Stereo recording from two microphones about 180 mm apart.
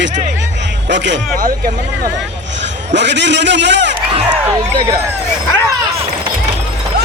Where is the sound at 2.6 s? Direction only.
75° right (ahead or behind).